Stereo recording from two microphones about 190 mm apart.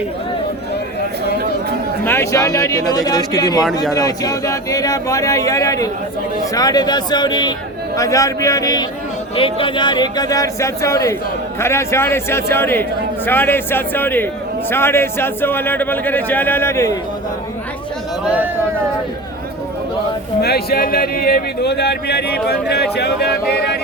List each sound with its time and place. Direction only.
2.0 s a man's voice: 15° left (ahead or behind)
20.4 s speech: 55° left (ahead or behind)